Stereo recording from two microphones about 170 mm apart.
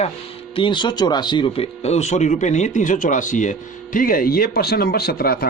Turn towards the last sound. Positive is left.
turn(degrees=60)  # may be behind; listen again after turning